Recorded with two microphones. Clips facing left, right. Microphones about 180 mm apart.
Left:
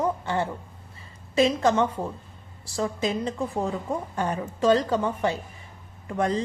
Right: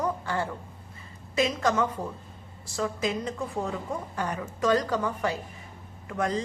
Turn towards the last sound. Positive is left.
turn(degrees=30)  # may be behind; listen again after turning